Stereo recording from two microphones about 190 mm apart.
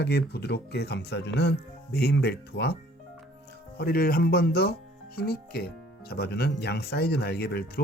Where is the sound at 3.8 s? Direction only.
50° left (ahead or behind).